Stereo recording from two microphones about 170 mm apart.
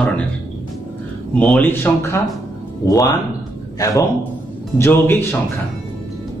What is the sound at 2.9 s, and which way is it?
A man's voice, 20° left (ahead or behind).